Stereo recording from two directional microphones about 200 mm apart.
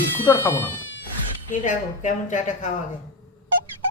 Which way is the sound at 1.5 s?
40° left (ahead or behind).